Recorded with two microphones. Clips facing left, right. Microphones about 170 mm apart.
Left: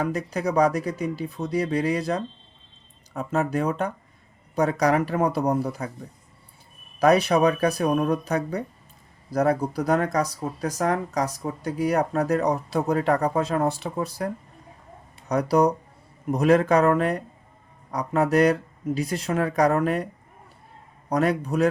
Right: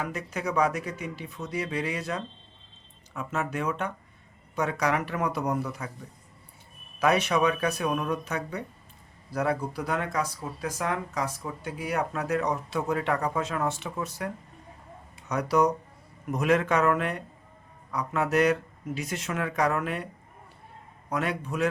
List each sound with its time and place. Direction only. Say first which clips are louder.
0.0 s speech: left 6 dB; 35° left (ahead or behind)
7.0 s speech: left 5 dB; 35° left (ahead or behind)
21.1 s speech: left 7 dB; 40° left (ahead or behind)